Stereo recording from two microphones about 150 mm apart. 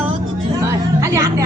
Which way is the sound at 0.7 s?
20° right (ahead or behind).